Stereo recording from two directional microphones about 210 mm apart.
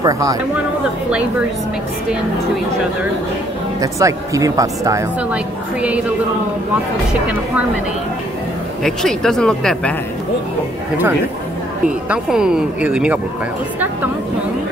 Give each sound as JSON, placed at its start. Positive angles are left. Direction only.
{"t": 0.0, "sound": "speech", "side_deg": -15}
{"t": 3.8, "sound": "speech", "side_deg": -15}
{"t": 8.8, "sound": "speech", "side_deg": 0}
{"t": 12.1, "sound": "speech", "side_deg": -5}